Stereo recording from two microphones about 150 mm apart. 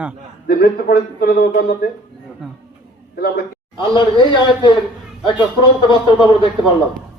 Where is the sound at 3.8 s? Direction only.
30° left (ahead or behind).